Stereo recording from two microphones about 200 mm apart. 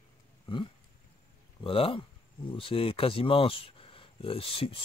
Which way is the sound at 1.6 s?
25° left (ahead or behind).